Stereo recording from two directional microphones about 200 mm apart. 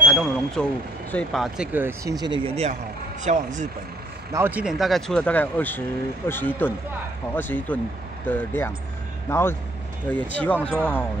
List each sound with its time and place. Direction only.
0.1 s speech: 5° left (ahead or behind); by 3.4 s 35° right (ahead or behind)
4.3 s speech: 10° right (ahead or behind); by 10.8 s 5° left (ahead or behind)